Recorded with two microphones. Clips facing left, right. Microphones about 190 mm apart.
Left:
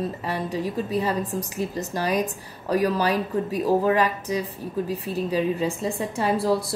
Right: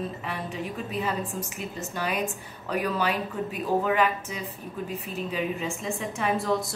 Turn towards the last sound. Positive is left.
turn(degrees=35)  # may be behind; listen again after turning